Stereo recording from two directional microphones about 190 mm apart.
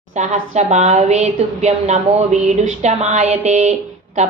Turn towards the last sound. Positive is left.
turn(degrees=-35)  # may be behind; listen again after turning